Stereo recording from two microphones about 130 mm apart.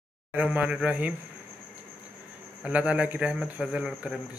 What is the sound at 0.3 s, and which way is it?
Speech, 10° right (ahead or behind).